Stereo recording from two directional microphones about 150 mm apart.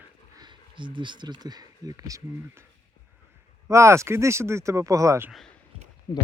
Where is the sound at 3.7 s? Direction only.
20° right (ahead or behind).